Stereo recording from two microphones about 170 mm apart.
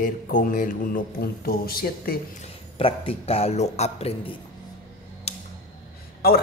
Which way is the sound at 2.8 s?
35° left (ahead or behind).